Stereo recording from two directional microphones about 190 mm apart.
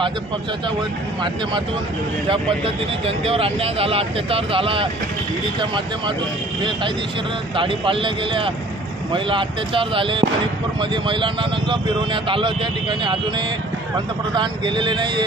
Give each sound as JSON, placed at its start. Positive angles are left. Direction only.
{"t": 2.2, "sound": "speech", "side_deg": -30}
{"t": 7.5, "sound": "speech", "side_deg": -25}
{"t": 14.3, "sound": "speech", "side_deg": -25}